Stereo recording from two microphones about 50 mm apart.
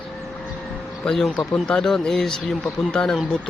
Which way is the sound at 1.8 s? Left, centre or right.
Centre.